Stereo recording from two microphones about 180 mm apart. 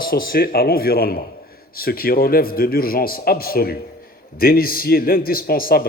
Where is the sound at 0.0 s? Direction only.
55° left (ahead or behind).